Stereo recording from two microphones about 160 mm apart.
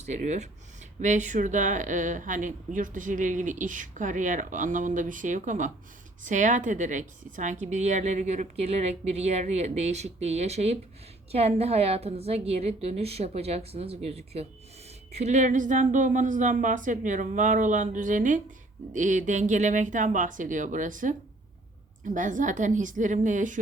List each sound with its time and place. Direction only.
0.0 s a woman's voice: 45° right (ahead or behind)